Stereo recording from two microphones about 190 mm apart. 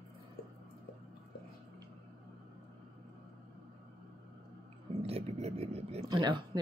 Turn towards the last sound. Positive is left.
turn(degrees=-20)  # may be behind; listen again after turning